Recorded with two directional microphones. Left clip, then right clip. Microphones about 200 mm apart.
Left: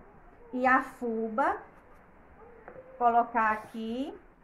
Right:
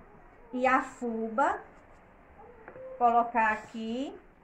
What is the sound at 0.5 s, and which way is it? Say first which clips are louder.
Speech: left 1 dB; 20° left (ahead or behind).